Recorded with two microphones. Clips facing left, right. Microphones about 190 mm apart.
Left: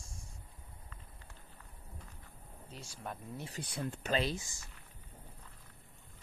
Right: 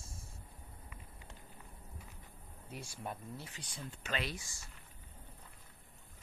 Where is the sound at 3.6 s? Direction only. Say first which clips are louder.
Left 9 dB; 60° left (ahead or behind).